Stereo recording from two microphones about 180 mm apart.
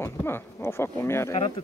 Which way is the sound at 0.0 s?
15° left (ahead or behind).